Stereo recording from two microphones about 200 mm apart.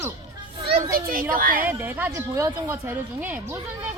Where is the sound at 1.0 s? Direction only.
45° right (ahead or behind).